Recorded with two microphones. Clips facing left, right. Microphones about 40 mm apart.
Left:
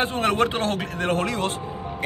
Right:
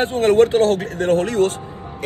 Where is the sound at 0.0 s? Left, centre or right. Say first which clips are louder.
Right 7 dB; left.